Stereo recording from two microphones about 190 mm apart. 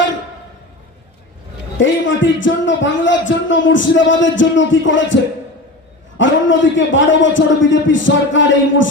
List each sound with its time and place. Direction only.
1.8 s speech: 75° left (ahead or behind)